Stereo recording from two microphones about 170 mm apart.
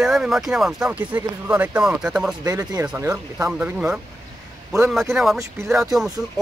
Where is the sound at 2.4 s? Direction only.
15° right (ahead or behind); by 6.1 s centre (ahead or behind).